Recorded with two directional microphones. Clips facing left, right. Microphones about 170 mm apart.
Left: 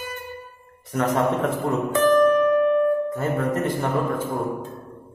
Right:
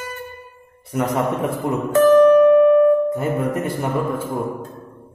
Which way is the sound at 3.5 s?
10° right (ahead or behind).